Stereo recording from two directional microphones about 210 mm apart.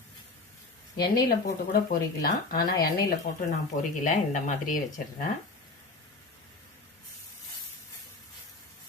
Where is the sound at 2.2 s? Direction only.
45° left (ahead or behind).